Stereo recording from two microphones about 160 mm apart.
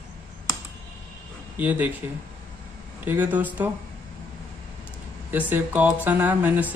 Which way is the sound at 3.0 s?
10° right (ahead or behind).